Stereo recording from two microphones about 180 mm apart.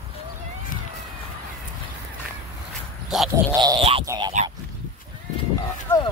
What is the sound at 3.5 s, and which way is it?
Speech, 25° right (ahead or behind).